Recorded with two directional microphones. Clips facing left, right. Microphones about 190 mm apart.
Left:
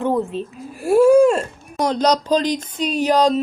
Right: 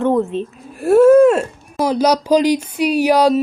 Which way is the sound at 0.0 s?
10° left (ahead or behind).